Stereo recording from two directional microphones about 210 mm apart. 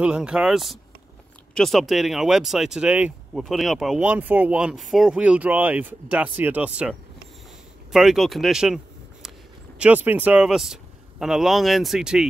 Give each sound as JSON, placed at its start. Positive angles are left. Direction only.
{"t": 0.0, "sound": "speech", "side_deg": -5}